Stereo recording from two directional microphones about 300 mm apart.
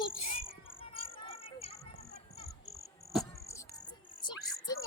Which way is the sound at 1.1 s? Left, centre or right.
Centre.